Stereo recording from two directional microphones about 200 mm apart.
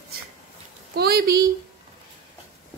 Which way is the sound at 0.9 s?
50° right (ahead or behind).